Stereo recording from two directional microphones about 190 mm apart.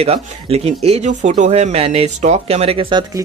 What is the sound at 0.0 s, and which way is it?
Speech, 35° right (ahead or behind).